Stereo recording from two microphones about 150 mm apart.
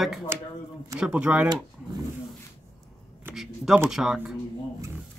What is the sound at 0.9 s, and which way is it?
Speech, 5° right (ahead or behind).